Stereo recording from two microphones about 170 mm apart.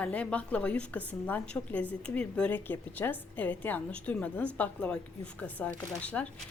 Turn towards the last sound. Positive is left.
turn(degrees=5)  # may be behind; listen again after turning